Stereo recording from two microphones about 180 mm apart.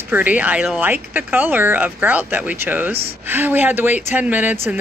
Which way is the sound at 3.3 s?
10° right (ahead or behind).